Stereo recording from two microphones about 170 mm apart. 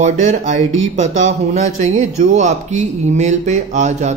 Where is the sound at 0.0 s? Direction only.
45° right (ahead or behind).